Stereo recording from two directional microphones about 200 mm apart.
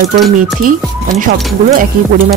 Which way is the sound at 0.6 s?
45° right (ahead or behind).